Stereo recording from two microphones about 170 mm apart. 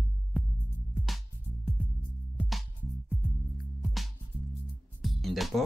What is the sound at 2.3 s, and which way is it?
Music, centre (ahead or behind).